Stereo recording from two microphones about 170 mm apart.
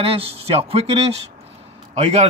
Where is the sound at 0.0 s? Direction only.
35° right (ahead or behind).